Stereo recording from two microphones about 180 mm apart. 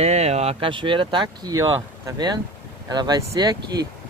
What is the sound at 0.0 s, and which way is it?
Speech, 35° right (ahead or behind).